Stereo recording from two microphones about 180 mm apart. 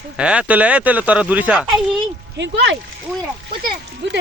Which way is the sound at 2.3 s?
80° right.